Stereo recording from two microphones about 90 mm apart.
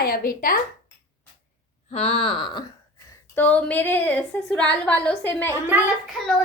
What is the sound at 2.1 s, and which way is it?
Speech, 85° left.